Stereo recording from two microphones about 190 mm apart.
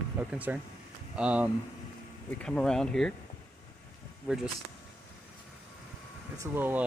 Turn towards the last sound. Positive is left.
turn(degrees=-10)  # may be behind; listen again after turning